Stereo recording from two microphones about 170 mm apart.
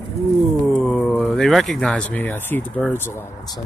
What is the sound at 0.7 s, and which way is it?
Speech, 5° left (ahead or behind).